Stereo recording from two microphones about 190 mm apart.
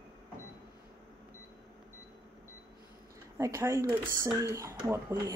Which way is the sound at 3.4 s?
15° right (ahead or behind).